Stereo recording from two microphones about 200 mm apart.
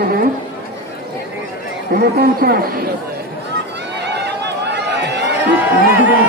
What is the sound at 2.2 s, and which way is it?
Speech, 50° right (ahead or behind).